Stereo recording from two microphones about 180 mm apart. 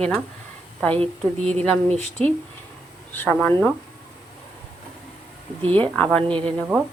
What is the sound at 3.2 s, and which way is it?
Speech, 10° left (ahead or behind).